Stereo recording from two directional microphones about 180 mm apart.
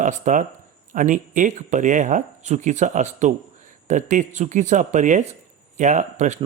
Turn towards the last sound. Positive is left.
turn(degrees=-40)  # may be behind; listen again after turning